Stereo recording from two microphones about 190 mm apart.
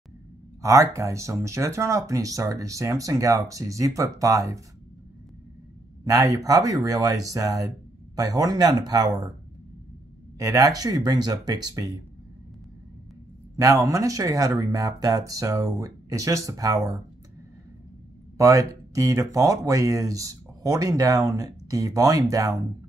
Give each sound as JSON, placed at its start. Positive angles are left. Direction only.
{"t": 0.6, "sound": "speech", "side_deg": -15}
{"t": 6.0, "sound": "speech", "side_deg": -15}
{"t": 10.4, "sound": "speech", "side_deg": -20}
{"t": 13.6, "sound": "speech", "side_deg": -15}
{"t": 18.4, "sound": "speech", "side_deg": -15}